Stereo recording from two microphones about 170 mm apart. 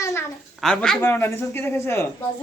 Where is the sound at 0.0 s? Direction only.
15° left (ahead or behind).